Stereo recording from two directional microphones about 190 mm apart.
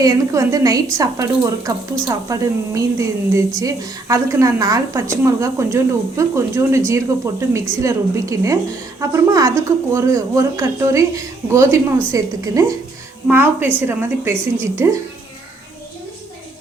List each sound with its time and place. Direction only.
0.0 s a woman's voice: 20° right (ahead or behind)